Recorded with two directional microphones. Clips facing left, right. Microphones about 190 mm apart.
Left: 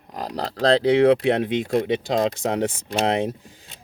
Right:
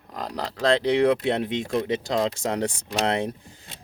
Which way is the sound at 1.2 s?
20° left (ahead or behind).